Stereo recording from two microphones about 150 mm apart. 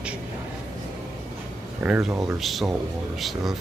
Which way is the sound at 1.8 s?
5° right (ahead or behind).